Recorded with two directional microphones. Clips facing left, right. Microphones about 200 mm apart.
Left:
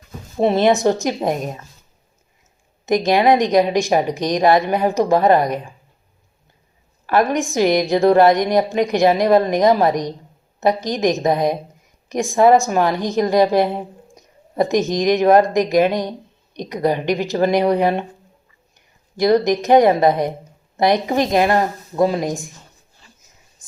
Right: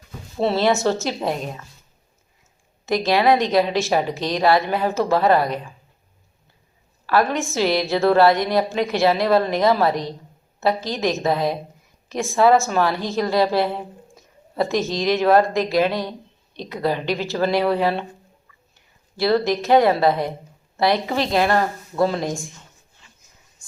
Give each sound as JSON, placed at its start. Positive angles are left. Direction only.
{"t": 0.3, "sound": "a woman's voice", "side_deg": 15}
{"t": 2.8, "sound": "a woman's voice", "side_deg": 15}
{"t": 7.1, "sound": "a woman's voice", "side_deg": 20}
{"t": 19.1, "sound": "a woman's voice", "side_deg": 15}